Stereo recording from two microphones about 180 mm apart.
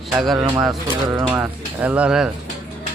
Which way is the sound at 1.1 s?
20° right (ahead or behind).